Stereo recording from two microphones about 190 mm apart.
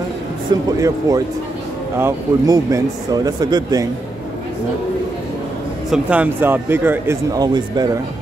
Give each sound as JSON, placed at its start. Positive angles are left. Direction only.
{"t": 0.7, "sound": "speech", "side_deg": -20}
{"t": 5.9, "sound": "speech", "side_deg": -5}